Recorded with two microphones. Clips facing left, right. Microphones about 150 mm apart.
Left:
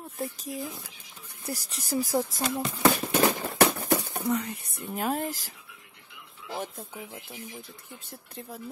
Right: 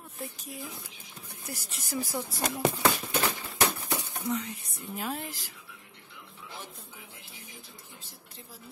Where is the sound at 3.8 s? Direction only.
55° left (ahead or behind).